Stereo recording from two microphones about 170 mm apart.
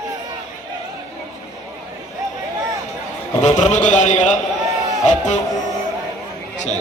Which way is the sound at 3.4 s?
45° left (ahead or behind).